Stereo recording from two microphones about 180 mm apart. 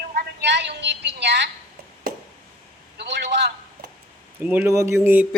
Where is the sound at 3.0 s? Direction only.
70° right (ahead or behind).